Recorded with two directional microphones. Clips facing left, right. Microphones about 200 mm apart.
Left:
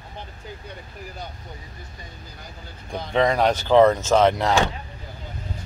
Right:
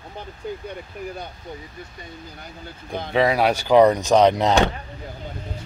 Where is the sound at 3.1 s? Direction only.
5° right (ahead or behind).